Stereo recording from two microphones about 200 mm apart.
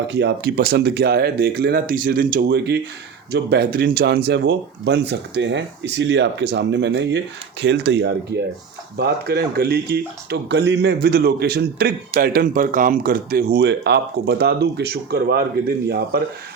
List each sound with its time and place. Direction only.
0.1 s speech: 55° right (ahead or behind)